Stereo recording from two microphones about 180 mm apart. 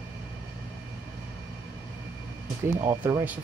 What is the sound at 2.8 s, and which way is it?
Speech, 10° right (ahead or behind).